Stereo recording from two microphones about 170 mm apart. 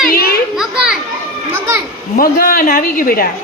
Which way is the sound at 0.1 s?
60° left (ahead or behind).